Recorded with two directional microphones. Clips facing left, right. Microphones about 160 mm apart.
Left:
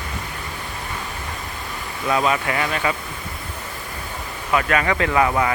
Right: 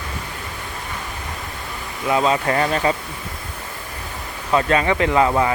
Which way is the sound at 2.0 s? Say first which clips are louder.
Right 2 dB; 25° right (ahead or behind).